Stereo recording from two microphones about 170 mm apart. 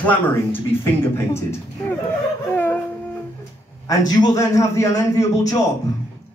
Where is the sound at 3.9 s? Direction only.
20° left (ahead or behind).